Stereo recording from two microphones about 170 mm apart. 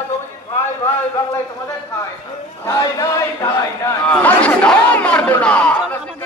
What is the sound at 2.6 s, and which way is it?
A man's voice, 20° left (ahead or behind).